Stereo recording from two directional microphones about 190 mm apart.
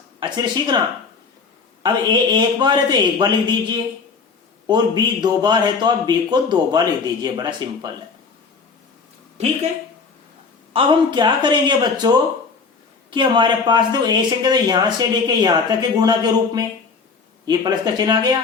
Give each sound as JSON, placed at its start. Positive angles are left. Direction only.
{"t": 0.2, "sound": "speech", "side_deg": -20}
{"t": 1.8, "sound": "speech", "side_deg": -25}
{"t": 10.7, "sound": "speech", "side_deg": -25}